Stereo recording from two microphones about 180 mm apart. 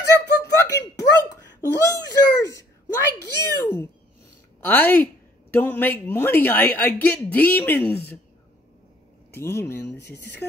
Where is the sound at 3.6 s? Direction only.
10° left (ahead or behind).